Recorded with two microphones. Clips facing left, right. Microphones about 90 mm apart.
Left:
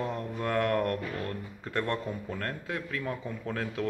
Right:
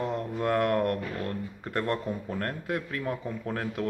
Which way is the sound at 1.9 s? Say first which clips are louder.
Right 2 dB; 25° right (ahead or behind).